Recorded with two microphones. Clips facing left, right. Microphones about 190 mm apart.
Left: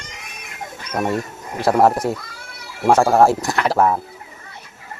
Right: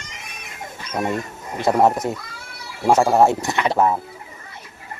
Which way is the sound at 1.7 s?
Centre (ahead or behind).